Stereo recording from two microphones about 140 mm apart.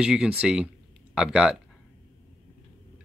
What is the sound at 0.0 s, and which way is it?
Speech, 5° right (ahead or behind).